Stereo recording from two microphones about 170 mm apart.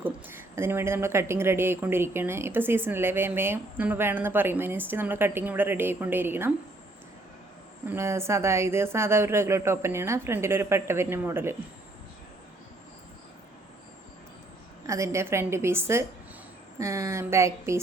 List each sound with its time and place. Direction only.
0.0 s a woman's voice: 15° right (ahead or behind)
7.9 s a woman's voice: 15° right (ahead or behind)
14.8 s a woman's voice: 15° right (ahead or behind)